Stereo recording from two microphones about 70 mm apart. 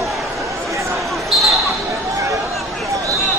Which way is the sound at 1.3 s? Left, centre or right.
Centre.